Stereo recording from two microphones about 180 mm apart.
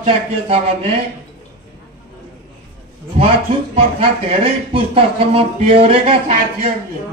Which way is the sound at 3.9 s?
30° right (ahead or behind).